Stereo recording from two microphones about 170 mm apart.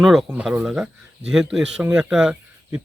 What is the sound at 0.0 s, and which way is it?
Speech, centre (ahead or behind).